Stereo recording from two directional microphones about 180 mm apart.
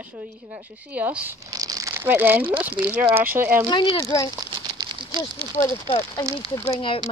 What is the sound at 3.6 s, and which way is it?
Speech, 25° left (ahead or behind).